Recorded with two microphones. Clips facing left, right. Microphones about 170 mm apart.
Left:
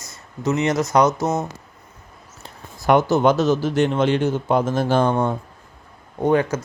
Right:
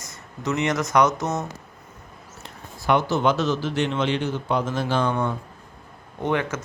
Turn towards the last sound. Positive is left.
turn(degrees=40)  # may be behind; listen again after turning